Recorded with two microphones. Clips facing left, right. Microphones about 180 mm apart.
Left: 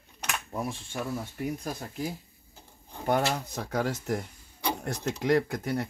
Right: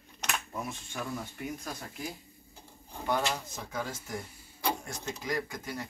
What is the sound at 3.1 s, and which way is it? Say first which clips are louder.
Speech: left 4 dB; 55° left (ahead or behind).